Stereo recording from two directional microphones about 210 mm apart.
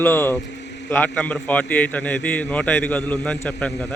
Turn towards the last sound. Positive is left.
turn(degrees=5)  # may be behind; listen again after turning